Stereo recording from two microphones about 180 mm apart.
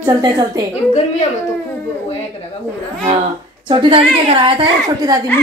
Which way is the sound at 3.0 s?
30° right (ahead or behind).